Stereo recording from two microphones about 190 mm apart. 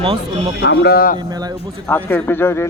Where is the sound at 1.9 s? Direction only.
10° left (ahead or behind).